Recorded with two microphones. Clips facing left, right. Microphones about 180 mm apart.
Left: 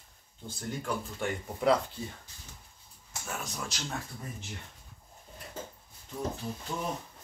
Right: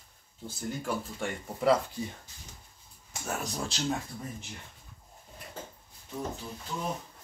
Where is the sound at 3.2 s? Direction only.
35° right (ahead or behind).